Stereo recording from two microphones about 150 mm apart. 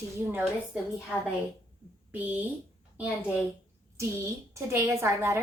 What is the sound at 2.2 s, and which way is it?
Speech, 10° right (ahead or behind).